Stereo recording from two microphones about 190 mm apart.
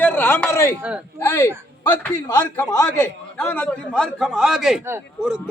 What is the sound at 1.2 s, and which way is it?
Speech, 15° left (ahead or behind).